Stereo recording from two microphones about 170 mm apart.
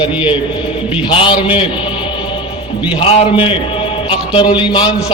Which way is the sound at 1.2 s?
30° left (ahead or behind).